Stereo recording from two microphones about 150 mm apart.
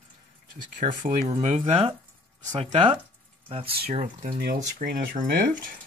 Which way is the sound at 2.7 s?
35° right (ahead or behind).